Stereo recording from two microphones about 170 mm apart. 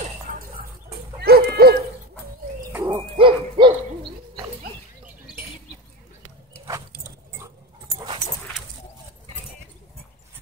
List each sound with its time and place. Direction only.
0.0 s a sound: 50° right (ahead or behind)
1.2 s dog: 65° right (ahead or behind)
2.7 s dog: 15° right (ahead or behind)
3.2 s hoot: 30° right (ahead or behind)